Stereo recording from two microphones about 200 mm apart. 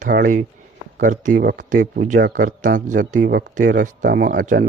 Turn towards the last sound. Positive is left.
turn(degrees=-40)  # may be behind; listen again after turning